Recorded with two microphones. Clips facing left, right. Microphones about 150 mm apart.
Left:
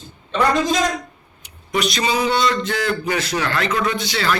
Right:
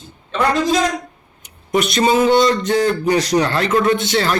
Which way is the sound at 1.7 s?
50° right (ahead or behind).